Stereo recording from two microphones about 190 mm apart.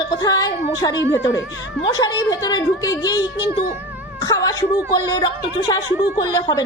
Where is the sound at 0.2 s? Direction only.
20° left (ahead or behind).